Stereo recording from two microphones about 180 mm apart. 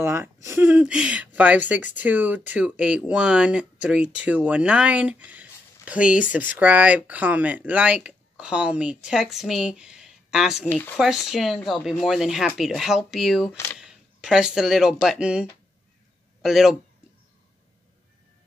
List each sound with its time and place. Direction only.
0.0 s speech: 15° right (ahead or behind)
10.7 s speech: 10° left (ahead or behind)
11.0 s speech: centre (ahead or behind)
16.4 s speech: centre (ahead or behind)